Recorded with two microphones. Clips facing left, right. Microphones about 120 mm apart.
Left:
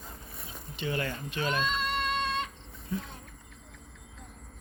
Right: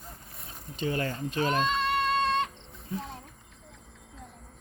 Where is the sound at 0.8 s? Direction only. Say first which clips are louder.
Right 3 dB; 40° right (ahead or behind).